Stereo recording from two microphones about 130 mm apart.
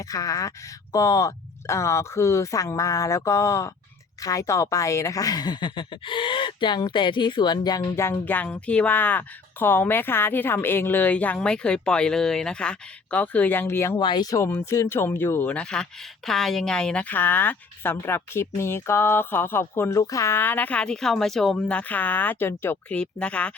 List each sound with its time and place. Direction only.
0.0 s speech: 25° left (ahead or behind)
7.9 s speech: 15° left (ahead or behind)
14.0 s speech: 35° left (ahead or behind); by 23.6 s 10° left (ahead or behind)